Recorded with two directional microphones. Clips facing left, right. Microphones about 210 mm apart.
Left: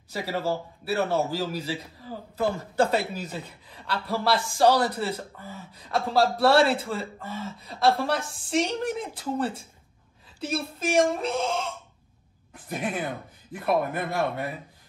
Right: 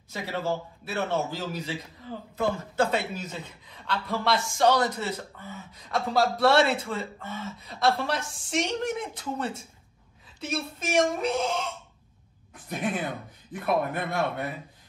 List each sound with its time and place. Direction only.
0.1 s speech: 35° left (ahead or behind)
12.6 s speech: centre (ahead or behind)